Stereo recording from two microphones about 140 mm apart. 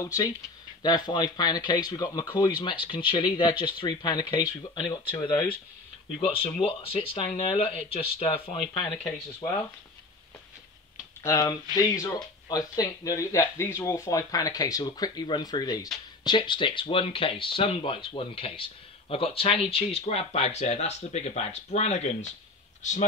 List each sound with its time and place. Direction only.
0.0 s speech: 25° left (ahead or behind)
6.1 s speech: 40° left (ahead or behind)
11.2 s speech: 25° left (ahead or behind); by 23.0 s 60° left (ahead or behind)